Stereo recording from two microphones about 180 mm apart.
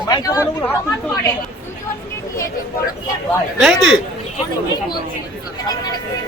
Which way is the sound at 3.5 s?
Centre (ahead or behind).